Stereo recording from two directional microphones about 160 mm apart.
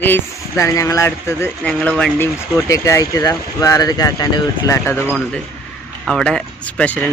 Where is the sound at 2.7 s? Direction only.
20° left (ahead or behind).